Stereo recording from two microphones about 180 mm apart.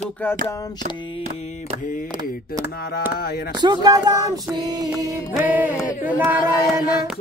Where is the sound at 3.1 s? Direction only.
60° left (ahead or behind).